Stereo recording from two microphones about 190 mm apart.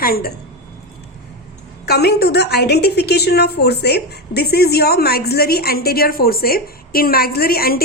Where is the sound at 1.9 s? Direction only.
55° left (ahead or behind).